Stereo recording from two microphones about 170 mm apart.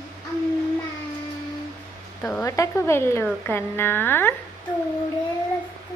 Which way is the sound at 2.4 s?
15° left (ahead or behind).